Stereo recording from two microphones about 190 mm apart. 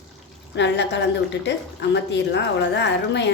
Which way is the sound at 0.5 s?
70° left (ahead or behind).